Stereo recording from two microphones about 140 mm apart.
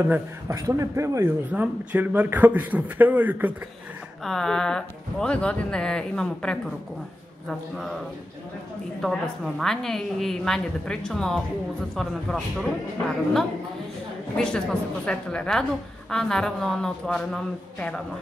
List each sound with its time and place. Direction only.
0.0 s a man's voice: 15° right (ahead or behind)
1.5 s a man's voice: 10° right (ahead or behind)
4.2 s speech: 5° left (ahead or behind)
9.0 s speech: centre (ahead or behind)
14.3 s speech: 5° left (ahead or behind)